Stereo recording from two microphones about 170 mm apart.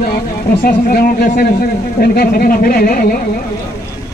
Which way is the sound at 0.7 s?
60° left (ahead or behind).